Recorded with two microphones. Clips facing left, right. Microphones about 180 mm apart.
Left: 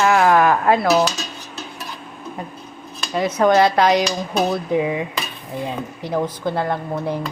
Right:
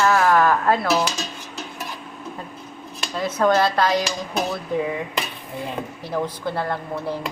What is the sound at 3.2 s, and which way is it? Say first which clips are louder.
A woman's voice: left 4 dB; 15° left (ahead or behind).